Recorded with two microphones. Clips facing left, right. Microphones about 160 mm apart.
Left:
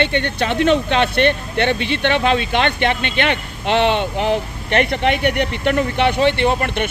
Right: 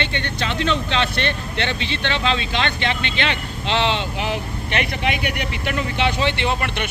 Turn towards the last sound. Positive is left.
turn(degrees=50)  # may be behind; listen again after turning